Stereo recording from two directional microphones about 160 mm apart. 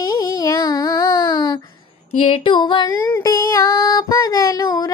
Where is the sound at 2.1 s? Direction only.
35° left (ahead or behind).